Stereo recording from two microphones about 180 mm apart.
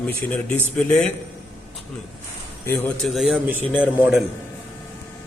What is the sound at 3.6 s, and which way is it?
Speech, 10° left (ahead or behind).